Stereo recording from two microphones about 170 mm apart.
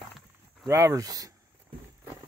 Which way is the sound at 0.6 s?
15° right (ahead or behind).